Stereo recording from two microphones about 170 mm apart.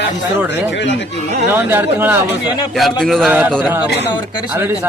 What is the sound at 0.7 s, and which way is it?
Speech, 90° left.